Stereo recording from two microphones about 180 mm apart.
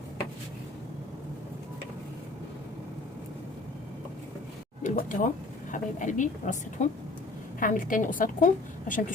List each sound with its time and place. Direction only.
4.8 s a woman's voice: 45° left (ahead or behind)